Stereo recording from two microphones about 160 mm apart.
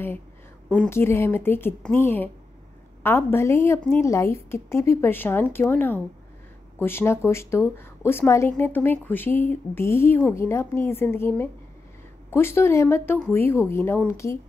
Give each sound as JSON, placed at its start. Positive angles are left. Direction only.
{"t": 0.7, "sound": "speech", "side_deg": 10}